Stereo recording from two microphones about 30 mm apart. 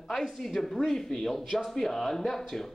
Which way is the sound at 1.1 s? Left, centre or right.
Left.